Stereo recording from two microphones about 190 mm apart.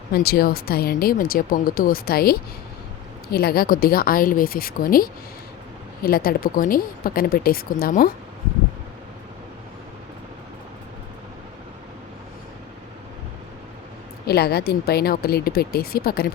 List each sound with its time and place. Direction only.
0.1 s speech: 55° left (ahead or behind)
14.3 s speech: 55° left (ahead or behind)